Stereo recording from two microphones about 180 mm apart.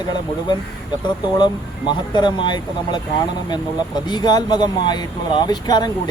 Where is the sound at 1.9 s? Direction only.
25° left (ahead or behind).